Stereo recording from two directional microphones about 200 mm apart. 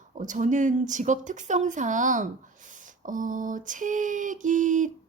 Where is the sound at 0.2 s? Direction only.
40° right (ahead or behind).